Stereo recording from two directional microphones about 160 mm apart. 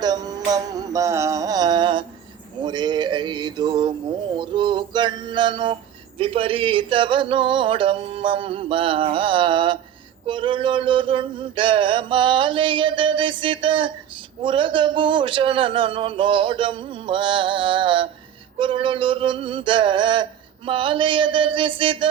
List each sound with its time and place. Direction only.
0.0 s music: 25° right (ahead or behind)
2.6 s a sound: 25° right (ahead or behind)
6.1 s a man's voice: 35° right (ahead or behind)